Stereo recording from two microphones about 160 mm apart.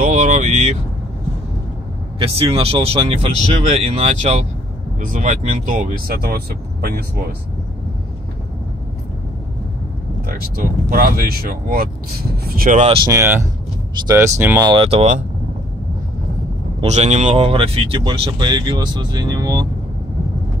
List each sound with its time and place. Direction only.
0.0 s vehicle: 50° right (ahead or behind)
2.1 s speech: 35° right (ahead or behind); by 7.1 s 75° right (ahead or behind)
10.2 s speech: 70° right (ahead or behind)
12.8 s speech: 35° right (ahead or behind)
13.1 s speech: 15° right (ahead or behind)
14.7 s speech: 35° right (ahead or behind)
16.8 s speech: 45° right (ahead or behind); by 19.7 s 25° right (ahead or behind)